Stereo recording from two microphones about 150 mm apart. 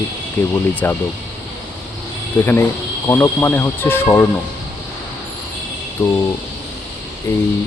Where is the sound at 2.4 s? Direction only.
15° left (ahead or behind).